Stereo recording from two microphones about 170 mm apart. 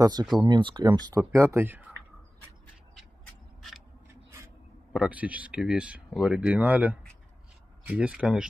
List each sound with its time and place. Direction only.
0.0 s speech: 25° right (ahead or behind)
4.1 s a sound: 15° right (ahead or behind)
4.9 s speech: 5° right (ahead or behind)